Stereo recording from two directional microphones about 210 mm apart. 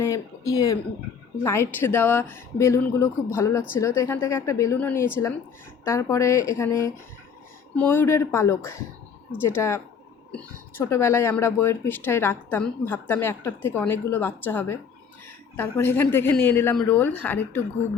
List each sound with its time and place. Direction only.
0.0 s speech: 15° left (ahead or behind)